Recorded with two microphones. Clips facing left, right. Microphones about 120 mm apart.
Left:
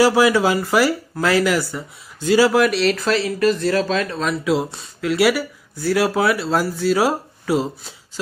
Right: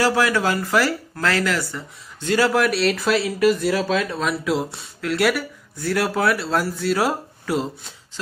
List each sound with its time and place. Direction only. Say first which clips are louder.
0.0 s speech: left 5 dB; 10° left (ahead or behind)